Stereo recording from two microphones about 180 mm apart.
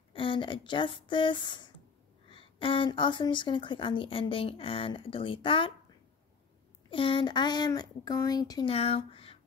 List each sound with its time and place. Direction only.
0.1 s a woman's voice: 30° left (ahead or behind)
6.9 s a woman's voice: 30° left (ahead or behind)
8.7 s speech: 35° left (ahead or behind)